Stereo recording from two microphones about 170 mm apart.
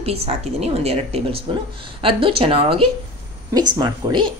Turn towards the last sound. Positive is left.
turn(degrees=-25)  # may be behind; listen again after turning